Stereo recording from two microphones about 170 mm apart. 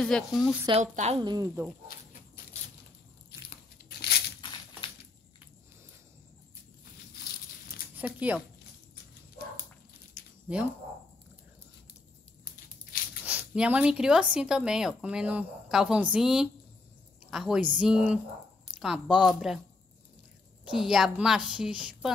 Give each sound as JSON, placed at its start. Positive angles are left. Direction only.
{"t": 0.0, "sound": "speech", "side_deg": 5}
{"t": 0.7, "sound": "speech", "side_deg": -40}
{"t": 1.2, "sound": "speech", "side_deg": -20}
{"t": 3.3, "sound": "crunch", "side_deg": 70}
{"t": 4.4, "sound": "crushing", "side_deg": 25}
{"t": 7.9, "sound": "speech", "side_deg": -10}
{"t": 13.2, "sound": "speech", "side_deg": -10}
{"t": 20.6, "sound": "speech", "side_deg": 0}